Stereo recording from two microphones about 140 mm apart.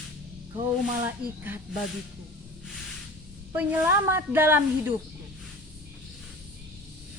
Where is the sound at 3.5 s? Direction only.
10° right (ahead or behind).